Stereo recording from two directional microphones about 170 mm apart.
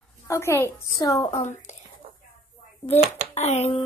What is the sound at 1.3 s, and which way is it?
Speech, 45° left (ahead or behind).